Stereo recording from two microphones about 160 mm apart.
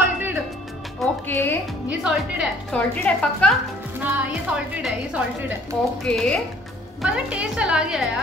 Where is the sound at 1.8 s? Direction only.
5° right (ahead or behind).